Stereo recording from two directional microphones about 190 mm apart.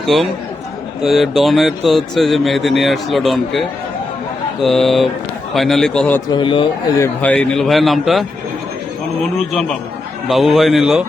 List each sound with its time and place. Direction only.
0.0 s a man's voice: centre (ahead or behind)
6.3 s speech: 25° left (ahead or behind)
7.0 s speech: 10° left (ahead or behind)
9.5 s speech: centre (ahead or behind)